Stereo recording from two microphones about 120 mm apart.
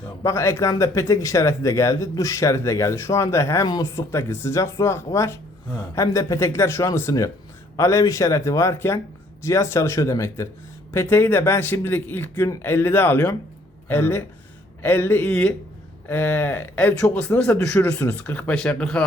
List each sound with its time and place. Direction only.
0.2 s speech: 25° left (ahead or behind); by 19.0 s 10° left (ahead or behind)